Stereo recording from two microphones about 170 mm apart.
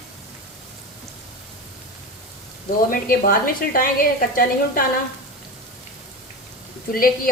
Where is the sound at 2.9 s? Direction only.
55° left (ahead or behind).